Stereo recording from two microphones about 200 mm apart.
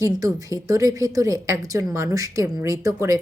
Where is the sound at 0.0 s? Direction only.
15° right (ahead or behind).